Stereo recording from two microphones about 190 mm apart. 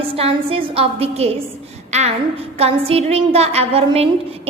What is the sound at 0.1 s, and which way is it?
A woman's voice, 30° right (ahead or behind).